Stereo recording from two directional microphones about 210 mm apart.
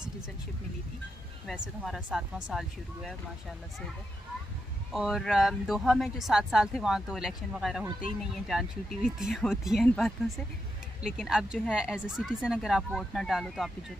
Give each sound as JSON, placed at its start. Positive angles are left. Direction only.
{"t": 1.5, "sound": "speech", "side_deg": -5}
{"t": 4.9, "sound": "speech", "side_deg": 0}